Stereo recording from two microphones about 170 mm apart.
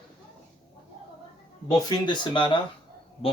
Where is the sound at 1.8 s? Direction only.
25° left (ahead or behind).